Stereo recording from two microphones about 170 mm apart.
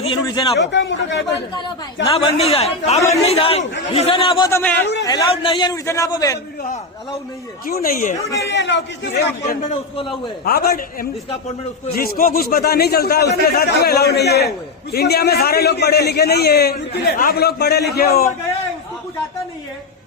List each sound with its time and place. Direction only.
0.0 s a man's voice: 30° left (ahead or behind)
0.6 s a man's voice: 90° left
2.0 s a man's voice: 35° left (ahead or behind)
4.4 s a man's voice: 15° left (ahead or behind)
5.0 s a man's voice: 30° left (ahead or behind)
7.7 s a man's voice: 60° left (ahead or behind)
8.2 s a man's voice: 20° left (ahead or behind)
8.5 s a man's voice: 90° left
10.4 s a man's voice: 65° left (ahead or behind)
11.9 s a man's voice: 60° left (ahead or behind)